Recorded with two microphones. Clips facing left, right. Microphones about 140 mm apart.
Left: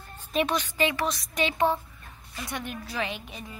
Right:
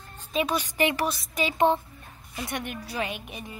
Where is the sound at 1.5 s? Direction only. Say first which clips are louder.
Right 6 dB; 20° right (ahead or behind).